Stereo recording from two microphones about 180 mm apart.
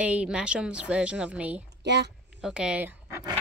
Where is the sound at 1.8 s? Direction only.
70° right (ahead or behind).